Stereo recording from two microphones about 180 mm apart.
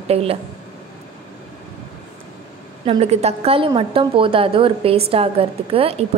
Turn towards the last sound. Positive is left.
turn(degrees=-30)  # may be behind; listen again after turning